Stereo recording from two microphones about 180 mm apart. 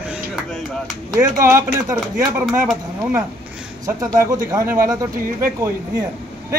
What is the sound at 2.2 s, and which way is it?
Speech, centre (ahead or behind).